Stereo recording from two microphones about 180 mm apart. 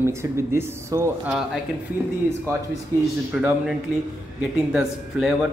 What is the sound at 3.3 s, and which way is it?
Speech, 5° right (ahead or behind).